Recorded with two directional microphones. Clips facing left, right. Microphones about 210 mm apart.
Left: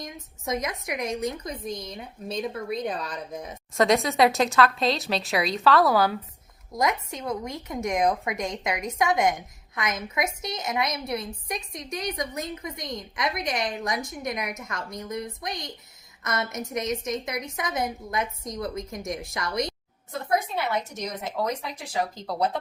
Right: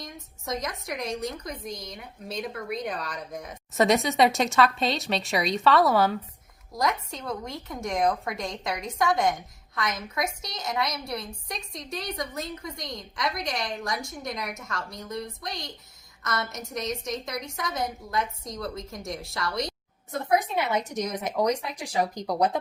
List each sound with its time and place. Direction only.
0.9 s a woman's voice: 20° left (ahead or behind)
3.8 s speech: centre (ahead or behind)
6.7 s a woman's voice: 20° left (ahead or behind)
20.4 s speech: 15° right (ahead or behind)